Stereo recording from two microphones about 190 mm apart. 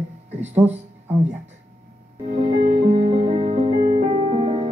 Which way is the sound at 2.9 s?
35° right (ahead or behind).